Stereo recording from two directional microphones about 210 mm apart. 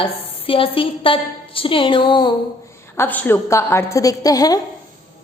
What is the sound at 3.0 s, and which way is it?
A woman's voice, 10° left (ahead or behind).